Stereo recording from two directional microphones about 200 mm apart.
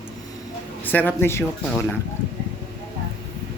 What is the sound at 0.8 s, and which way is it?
Speech, 10° left (ahead or behind).